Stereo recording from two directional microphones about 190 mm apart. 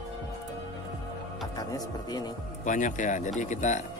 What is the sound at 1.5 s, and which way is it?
Speech, 20° left (ahead or behind).